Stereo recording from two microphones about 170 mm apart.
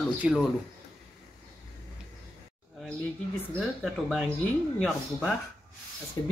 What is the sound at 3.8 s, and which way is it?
Speech, centre (ahead or behind).